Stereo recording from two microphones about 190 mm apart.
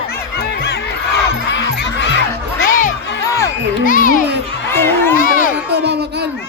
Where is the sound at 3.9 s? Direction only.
45° left (ahead or behind).